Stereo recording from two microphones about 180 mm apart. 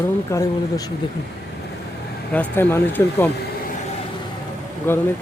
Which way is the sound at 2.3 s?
10° left (ahead or behind).